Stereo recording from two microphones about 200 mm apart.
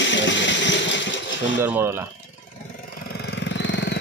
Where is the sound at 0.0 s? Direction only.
65° left (ahead or behind).